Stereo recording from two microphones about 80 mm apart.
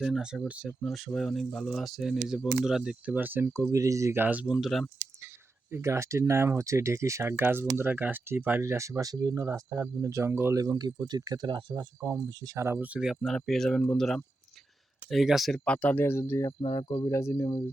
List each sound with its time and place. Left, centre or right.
0.0 s speech: centre
0.9 s speech: centre
3.2 s speech: right
3.5 s speech: right
4.1 s speech: right
4.5 s speech: centre
5.7 s speech: right
8.7 s speech: right
10.6 s speech: right
12.5 s speech: right
12.8 s speech: centre
13.1 s speech: centre
15.6 s speech: centre; by 16.5 s left
16.6 s speech: left